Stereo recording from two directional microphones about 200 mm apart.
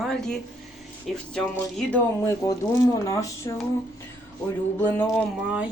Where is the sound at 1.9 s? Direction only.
15° left (ahead or behind).